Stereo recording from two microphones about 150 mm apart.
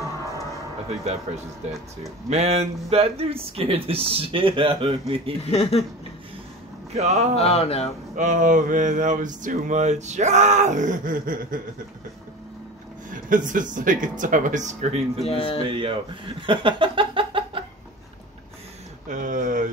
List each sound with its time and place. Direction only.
0.8 s speech: 45° right (ahead or behind)
5.5 s speech: 45° left (ahead or behind)
6.9 s a man's voice: 45° right (ahead or behind)
7.3 s speech: 40° left (ahead or behind)
8.2 s a sound: 55° right (ahead or behind)
13.1 s a sound: 60° right (ahead or behind)
15.2 s speech: 40° left (ahead or behind)
15.6 s speech: 35° right (ahead or behind)
19.0 s a sound: 60° right (ahead or behind)